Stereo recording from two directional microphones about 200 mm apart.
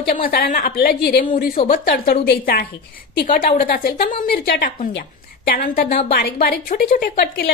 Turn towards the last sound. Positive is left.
turn(degrees=50)  # may be behind; listen again after turning